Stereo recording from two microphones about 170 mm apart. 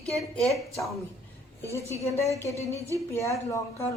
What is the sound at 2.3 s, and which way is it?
Speech, 20° right (ahead or behind).